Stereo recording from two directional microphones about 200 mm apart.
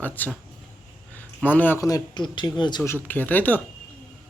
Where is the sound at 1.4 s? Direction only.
10° left (ahead or behind).